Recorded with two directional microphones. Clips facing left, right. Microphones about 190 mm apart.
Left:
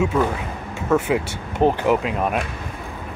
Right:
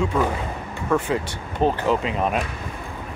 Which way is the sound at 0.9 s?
10° left (ahead or behind).